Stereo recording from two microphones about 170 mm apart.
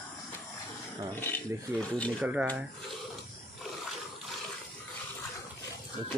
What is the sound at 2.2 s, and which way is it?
Speech, 10° right (ahead or behind).